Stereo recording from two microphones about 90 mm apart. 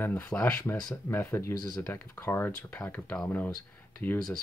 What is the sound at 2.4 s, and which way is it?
Speech, 20° left (ahead or behind).